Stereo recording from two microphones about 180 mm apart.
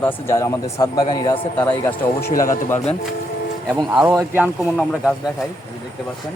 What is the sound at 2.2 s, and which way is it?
Speech, 50° left (ahead or behind).